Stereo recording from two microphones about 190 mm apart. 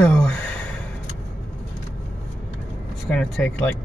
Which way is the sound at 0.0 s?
5° left (ahead or behind).